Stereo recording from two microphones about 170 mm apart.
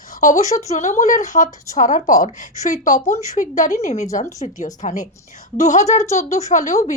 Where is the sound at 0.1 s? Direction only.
50° left (ahead or behind).